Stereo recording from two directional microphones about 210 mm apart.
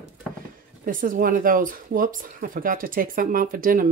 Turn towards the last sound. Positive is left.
turn(degrees=-40)  # may be behind; listen again after turning